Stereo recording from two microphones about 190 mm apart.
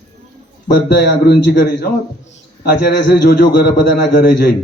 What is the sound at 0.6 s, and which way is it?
A man's voice, 60° left (ahead or behind).